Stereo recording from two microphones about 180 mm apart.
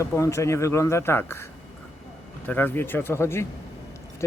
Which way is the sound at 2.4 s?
10° left (ahead or behind).